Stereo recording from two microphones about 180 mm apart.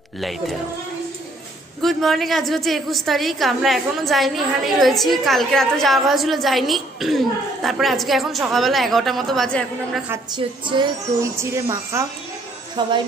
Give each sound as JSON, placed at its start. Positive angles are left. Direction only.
{"t": 0.2, "sound": "a woman's voice", "side_deg": 0}
{"t": 1.8, "sound": "a woman's voice", "side_deg": 0}
{"t": 10.3, "sound": "a woman's voice", "side_deg": -25}
{"t": 11.3, "sound": "a woman's voice", "side_deg": -15}